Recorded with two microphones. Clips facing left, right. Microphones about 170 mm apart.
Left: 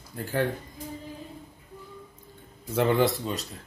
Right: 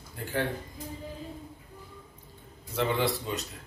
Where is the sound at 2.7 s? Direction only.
45° left (ahead or behind).